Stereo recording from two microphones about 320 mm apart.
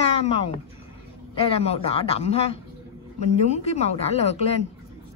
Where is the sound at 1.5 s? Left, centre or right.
Centre.